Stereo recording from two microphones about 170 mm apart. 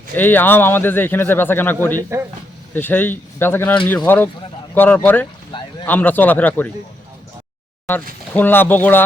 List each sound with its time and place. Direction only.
0.1 s speech: 10° left (ahead or behind)
2.0 s speech: 15° right (ahead or behind)
2.7 s speech: 10° left (ahead or behind)
8.3 s speech: 10° left (ahead or behind)